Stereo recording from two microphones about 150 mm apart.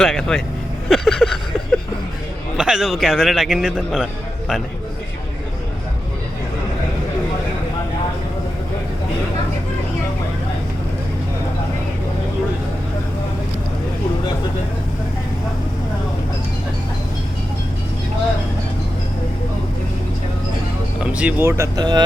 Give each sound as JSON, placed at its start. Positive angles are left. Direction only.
{"t": 0.0, "sound": "a man's voice", "side_deg": 5}
{"t": 0.9, "sound": "vehicle", "side_deg": 0}
{"t": 2.6, "sound": "a man's voice", "side_deg": -5}
{"t": 21.0, "sound": "speech", "side_deg": -10}